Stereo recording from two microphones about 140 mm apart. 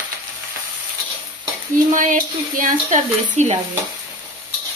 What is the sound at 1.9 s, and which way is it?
Speech, 65° right (ahead or behind).